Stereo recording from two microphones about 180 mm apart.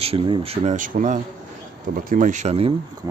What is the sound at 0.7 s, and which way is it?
Speech, 45° right (ahead or behind).